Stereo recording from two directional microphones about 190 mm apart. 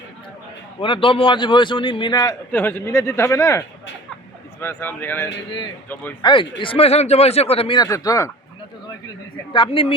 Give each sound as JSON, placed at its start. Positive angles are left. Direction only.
{"t": 0.8, "sound": "speech", "side_deg": 25}
{"t": 2.5, "sound": "speech", "side_deg": 10}
{"t": 4.6, "sound": "speech", "side_deg": 10}
{"t": 6.2, "sound": "a woman's voice", "side_deg": 25}